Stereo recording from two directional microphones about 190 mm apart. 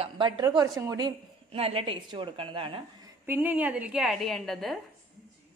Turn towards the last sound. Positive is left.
turn(degrees=0)  # may be behind; listen again after turning